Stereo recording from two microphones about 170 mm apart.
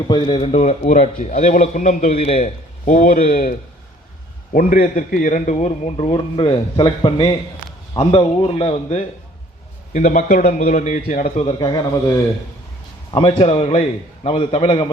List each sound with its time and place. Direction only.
0.1 s a man's voice: 30° left (ahead or behind)
4.5 s a man's voice: 50° left (ahead or behind)
13.1 s a man's voice: 30° left (ahead or behind)